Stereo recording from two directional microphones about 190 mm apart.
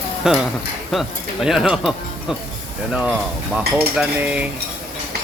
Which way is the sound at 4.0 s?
5° right (ahead or behind).